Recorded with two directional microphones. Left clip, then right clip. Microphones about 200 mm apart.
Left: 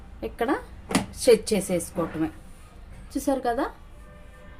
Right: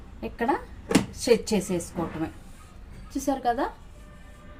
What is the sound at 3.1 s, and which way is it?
Speech, 25° left (ahead or behind).